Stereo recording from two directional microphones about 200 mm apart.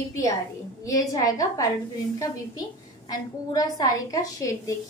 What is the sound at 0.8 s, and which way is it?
Speech, 15° left (ahead or behind).